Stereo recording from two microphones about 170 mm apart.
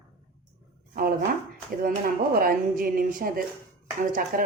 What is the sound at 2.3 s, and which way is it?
Speech, 55° right (ahead or behind).